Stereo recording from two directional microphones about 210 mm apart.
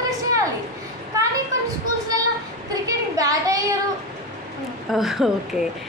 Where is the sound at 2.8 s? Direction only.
15° right (ahead or behind).